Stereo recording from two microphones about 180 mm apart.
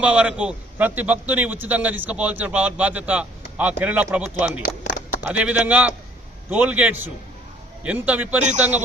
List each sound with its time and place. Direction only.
0.0 s a man's voice: 5° right (ahead or behind)
4.6 s a sound: 50° left (ahead or behind)
5.2 s a man's voice: 10° right (ahead or behind)